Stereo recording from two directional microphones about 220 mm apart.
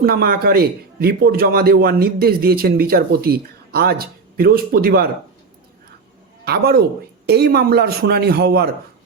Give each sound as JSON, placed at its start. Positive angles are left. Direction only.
{"t": 0.0, "sound": "a man's voice", "side_deg": -45}
{"t": 6.4, "sound": "a woman's voice", "side_deg": -45}